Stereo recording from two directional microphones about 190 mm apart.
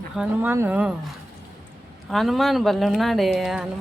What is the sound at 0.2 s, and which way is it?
Speech, 10° right (ahead or behind).